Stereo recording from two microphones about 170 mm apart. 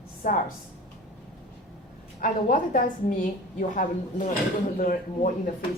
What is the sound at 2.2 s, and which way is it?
A woman's voice, 55° left (ahead or behind).